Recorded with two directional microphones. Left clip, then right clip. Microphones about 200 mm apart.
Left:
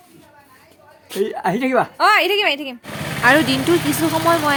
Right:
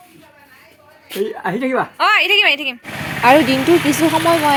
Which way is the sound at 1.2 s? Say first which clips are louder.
Left 1 dB; 20° left (ahead or behind).